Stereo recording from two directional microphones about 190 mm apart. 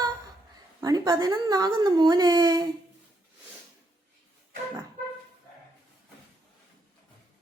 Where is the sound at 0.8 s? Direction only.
20° right (ahead or behind).